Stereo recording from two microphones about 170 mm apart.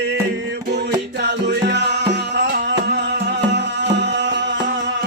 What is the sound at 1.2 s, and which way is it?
Music, 80° right.